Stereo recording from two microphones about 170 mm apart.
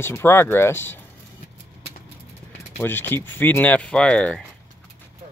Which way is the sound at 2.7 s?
10° left (ahead or behind).